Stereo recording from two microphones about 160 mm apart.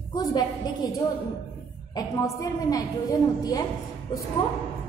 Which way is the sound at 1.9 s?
20° left (ahead or behind).